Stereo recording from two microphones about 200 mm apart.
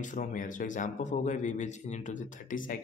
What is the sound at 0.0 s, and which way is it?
Speech, 40° left (ahead or behind).